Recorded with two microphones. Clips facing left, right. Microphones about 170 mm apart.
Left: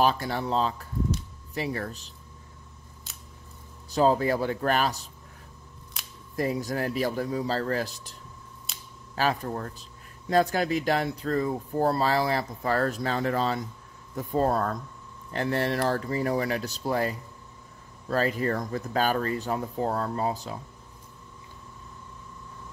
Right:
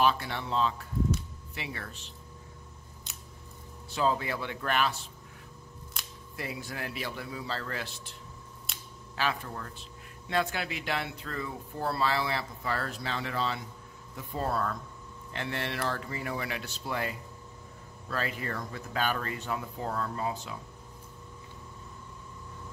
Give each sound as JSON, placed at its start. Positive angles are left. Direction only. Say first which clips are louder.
{"t": 0.0, "sound": "speech", "louder": "left 3 dB", "side_deg": 40}
{"t": 3.1, "sound": "scissors", "louder": "right 1 dB", "side_deg": 5}
{"t": 3.9, "sound": "speech", "louder": "left 7 dB", "side_deg": 40}
{"t": 6.3, "sound": "speech", "louder": "left 11 dB", "side_deg": 40}
{"t": 8.7, "sound": "a sound", "louder": "right 1 dB", "side_deg": 0}
{"t": 9.1, "sound": "speech", "louder": "left 6 dB", "side_deg": 40}